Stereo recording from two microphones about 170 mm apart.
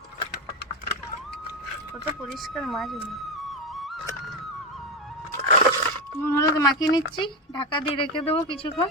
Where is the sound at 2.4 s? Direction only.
Centre (ahead or behind).